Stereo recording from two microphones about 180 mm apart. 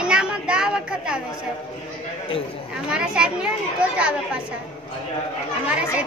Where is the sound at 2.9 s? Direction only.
5° right (ahead or behind).